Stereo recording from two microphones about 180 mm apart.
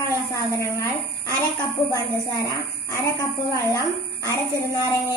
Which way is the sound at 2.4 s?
15° left (ahead or behind).